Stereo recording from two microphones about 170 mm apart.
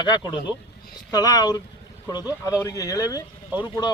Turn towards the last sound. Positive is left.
turn(degrees=-10)  # may be behind; listen again after turning